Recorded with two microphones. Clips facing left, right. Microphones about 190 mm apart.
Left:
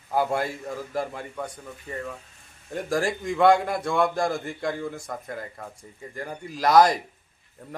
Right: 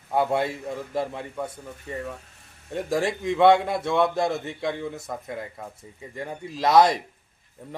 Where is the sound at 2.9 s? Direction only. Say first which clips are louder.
Right 1 dB; centre (ahead or behind).